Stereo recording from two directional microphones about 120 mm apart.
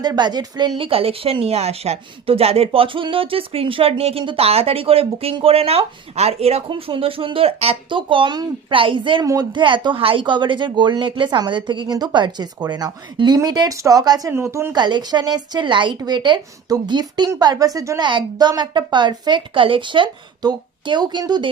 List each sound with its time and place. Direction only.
0.0 s a woman's voice: 35° right (ahead or behind)
0.8 s speech: 50° right (ahead or behind)
6.7 s speech: 45° right (ahead or behind)
9.2 s speech: 30° right (ahead or behind)
9.5 s a woman's voice: 45° right (ahead or behind); by 14.8 s 20° right (ahead or behind)
14.8 s a woman's voice: 35° right (ahead or behind)